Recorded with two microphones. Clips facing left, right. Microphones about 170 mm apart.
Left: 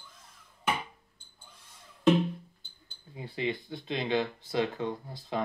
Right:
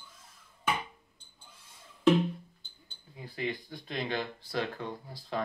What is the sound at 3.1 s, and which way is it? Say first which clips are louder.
Speech: left 3 dB; 25° left (ahead or behind).